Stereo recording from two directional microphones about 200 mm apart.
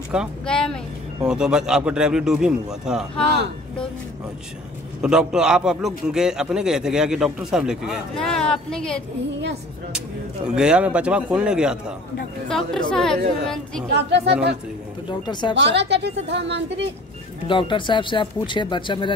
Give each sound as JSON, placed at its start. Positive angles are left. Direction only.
{"t": 0.1, "sound": "a man's voice", "side_deg": 0}
{"t": 5.0, "sound": "a man's voice", "side_deg": -5}
{"t": 13.9, "sound": "speech", "side_deg": -60}
{"t": 15.0, "sound": "speech", "side_deg": 25}
{"t": 15.5, "sound": "speech", "side_deg": -60}
{"t": 17.5, "sound": "speech", "side_deg": 25}